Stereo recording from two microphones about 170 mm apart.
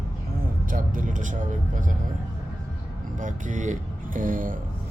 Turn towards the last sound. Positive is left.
turn(degrees=-50)  # may be behind; listen again after turning